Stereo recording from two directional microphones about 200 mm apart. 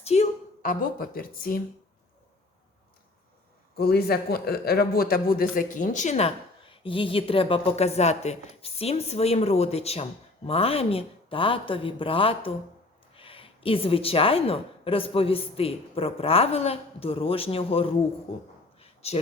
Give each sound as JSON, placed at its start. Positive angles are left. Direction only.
{"t": 0.0, "sound": "a woman's voice", "side_deg": 30}
{"t": 3.8, "sound": "a man's voice", "side_deg": 50}
{"t": 18.8, "sound": "a sound", "side_deg": 30}